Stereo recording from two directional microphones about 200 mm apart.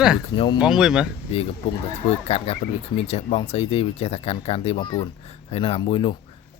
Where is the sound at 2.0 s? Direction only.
30° left (ahead or behind).